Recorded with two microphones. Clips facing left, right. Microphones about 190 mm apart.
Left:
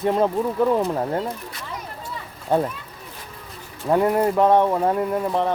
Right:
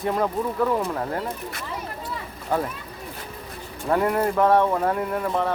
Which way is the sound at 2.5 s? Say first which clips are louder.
Left 4 dB; 20° left (ahead or behind).